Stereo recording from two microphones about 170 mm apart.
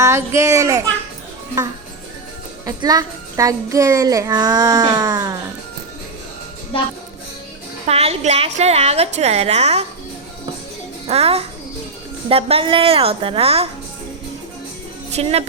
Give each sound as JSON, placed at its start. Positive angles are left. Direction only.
{"t": 0.0, "sound": "a child's voice", "side_deg": -15}
{"t": 2.6, "sound": "a child's voice", "side_deg": -20}
{"t": 7.9, "sound": "a woman's voice", "side_deg": -35}
{"t": 11.0, "sound": "a child's voice", "side_deg": -35}
{"t": 15.1, "sound": "a woman's voice", "side_deg": -35}